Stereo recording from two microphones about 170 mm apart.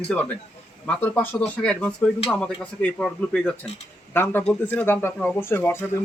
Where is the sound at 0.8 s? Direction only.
10° left (ahead or behind).